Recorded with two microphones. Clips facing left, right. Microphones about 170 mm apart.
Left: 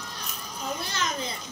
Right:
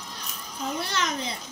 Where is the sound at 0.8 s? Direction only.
75° right (ahead or behind).